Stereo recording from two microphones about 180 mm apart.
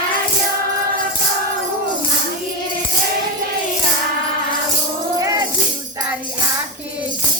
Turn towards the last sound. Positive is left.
turn(degrees=-20)  # may be behind; listen again after turning